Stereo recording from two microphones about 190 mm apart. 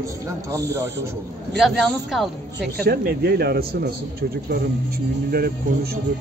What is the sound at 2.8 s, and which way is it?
Speech, 50° right (ahead or behind).